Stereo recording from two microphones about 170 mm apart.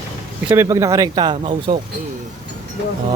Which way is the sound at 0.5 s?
15° right (ahead or behind).